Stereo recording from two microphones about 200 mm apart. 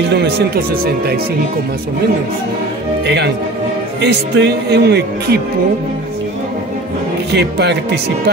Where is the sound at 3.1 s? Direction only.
60° right (ahead or behind).